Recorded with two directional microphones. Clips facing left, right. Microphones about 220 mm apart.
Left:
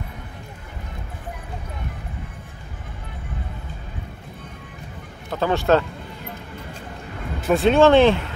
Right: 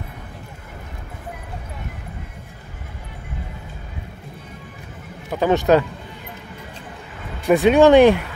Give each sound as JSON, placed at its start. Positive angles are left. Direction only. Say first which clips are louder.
{"t": 5.3, "sound": "speech", "louder": "right 3 dB", "side_deg": -15}
{"t": 7.4, "sound": "speech", "louder": "right 2 dB", "side_deg": -15}